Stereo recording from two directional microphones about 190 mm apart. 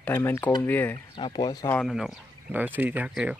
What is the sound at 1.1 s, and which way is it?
Speech, 25° left (ahead or behind).